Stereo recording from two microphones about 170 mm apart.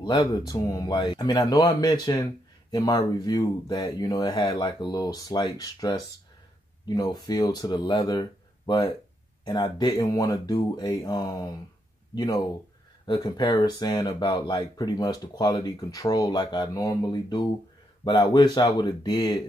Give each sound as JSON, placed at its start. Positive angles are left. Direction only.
{"t": 0.0, "sound": "speech", "side_deg": 25}